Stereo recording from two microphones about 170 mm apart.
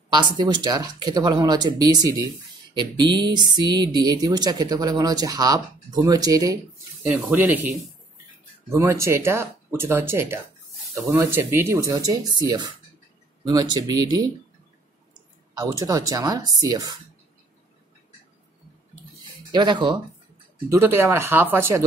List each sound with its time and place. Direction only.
0.1 s speech: 25° right (ahead or behind)
7.1 s speech: 10° right (ahead or behind)
15.5 s speech: 20° right (ahead or behind)
19.5 s speech: 25° right (ahead or behind)
20.7 s speech: 15° right (ahead or behind)